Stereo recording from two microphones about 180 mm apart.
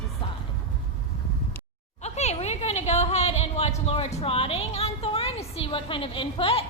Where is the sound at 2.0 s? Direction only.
40° left (ahead or behind).